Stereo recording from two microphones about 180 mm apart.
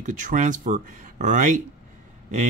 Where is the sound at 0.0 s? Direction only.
45° right (ahead or behind).